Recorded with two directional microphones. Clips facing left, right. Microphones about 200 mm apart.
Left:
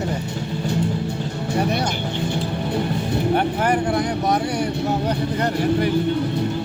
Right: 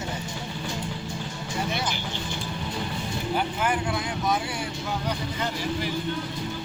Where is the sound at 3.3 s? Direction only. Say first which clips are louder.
Left 5 dB; 65° left (ahead or behind).